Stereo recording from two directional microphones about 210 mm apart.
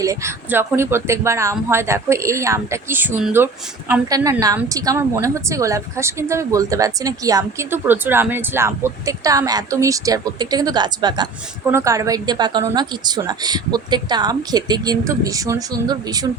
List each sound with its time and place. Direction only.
0.0 s a woman's voice: 15° right (ahead or behind)